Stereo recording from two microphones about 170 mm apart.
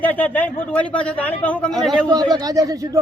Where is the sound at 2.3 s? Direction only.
20° right (ahead or behind).